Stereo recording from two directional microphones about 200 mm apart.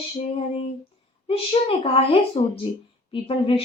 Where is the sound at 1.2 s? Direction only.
25° left (ahead or behind).